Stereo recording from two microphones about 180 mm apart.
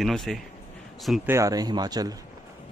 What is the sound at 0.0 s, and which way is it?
Speech, centre (ahead or behind).